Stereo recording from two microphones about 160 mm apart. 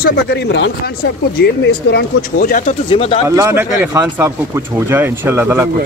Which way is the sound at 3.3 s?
15° right (ahead or behind).